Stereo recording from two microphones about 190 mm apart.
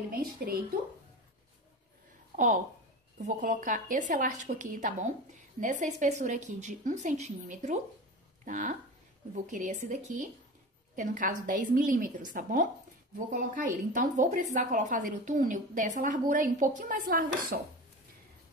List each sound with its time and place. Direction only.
0.1 s a woman's voice: 50° right (ahead or behind)
2.3 s a woman's voice: 40° right (ahead or behind)